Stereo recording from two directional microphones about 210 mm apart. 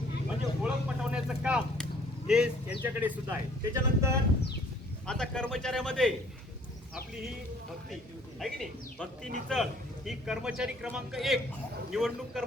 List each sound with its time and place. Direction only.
0.6 s a sound: 5° right (ahead or behind)
2.8 s speech: 10° right (ahead or behind)
5.0 s a man's voice: 5° left (ahead or behind)
8.4 s a man's voice: centre (ahead or behind)